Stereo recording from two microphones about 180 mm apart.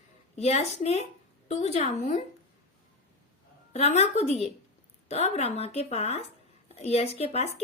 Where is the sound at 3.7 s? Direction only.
40° left (ahead or behind).